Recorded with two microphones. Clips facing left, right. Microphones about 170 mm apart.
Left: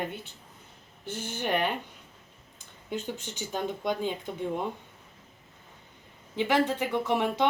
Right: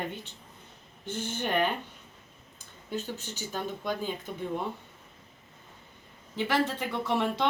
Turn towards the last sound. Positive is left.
turn(degrees=15)  # may be behind; listen again after turning